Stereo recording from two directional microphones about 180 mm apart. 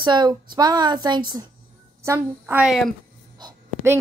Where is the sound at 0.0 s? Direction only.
25° right (ahead or behind); by 2.9 s centre (ahead or behind).